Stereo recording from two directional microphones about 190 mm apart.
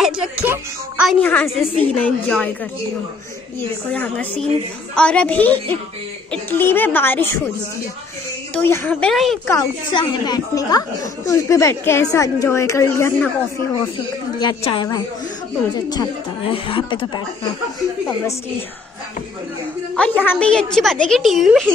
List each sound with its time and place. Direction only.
0.0 s speech: 5° right (ahead or behind)
1.2 s a woman's voice: 5° left (ahead or behind)
3.9 s a woman's voice: 10° left (ahead or behind)
8.5 s a woman's voice: 10° left (ahead or behind)
9.5 s a woman's voice: 20° left (ahead or behind)
14.4 s speech: 25° left (ahead or behind)
20.0 s a woman's voice: 5° left (ahead or behind)